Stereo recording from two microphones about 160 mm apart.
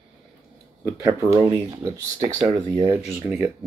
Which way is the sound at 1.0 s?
15° right (ahead or behind).